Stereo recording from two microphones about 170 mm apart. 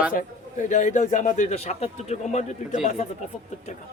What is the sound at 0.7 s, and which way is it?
A man's voice, 45° left (ahead or behind).